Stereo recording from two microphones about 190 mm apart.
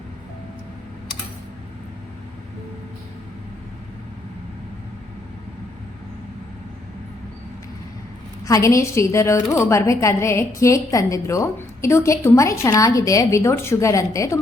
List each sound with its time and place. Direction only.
8.4 s a woman's voice: 15° left (ahead or behind)